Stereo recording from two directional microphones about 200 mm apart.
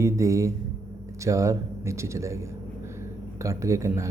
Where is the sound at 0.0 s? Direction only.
15° right (ahead or behind).